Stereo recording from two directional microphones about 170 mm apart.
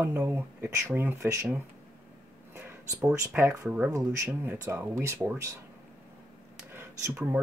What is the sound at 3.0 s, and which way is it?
Speech, 10° right (ahead or behind).